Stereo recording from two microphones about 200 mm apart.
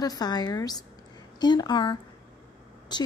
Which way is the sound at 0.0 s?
20° left (ahead or behind).